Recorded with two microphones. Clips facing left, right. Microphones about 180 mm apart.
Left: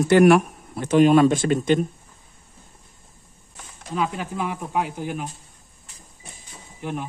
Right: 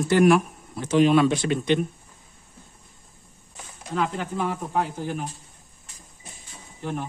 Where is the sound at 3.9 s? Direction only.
15° left (ahead or behind).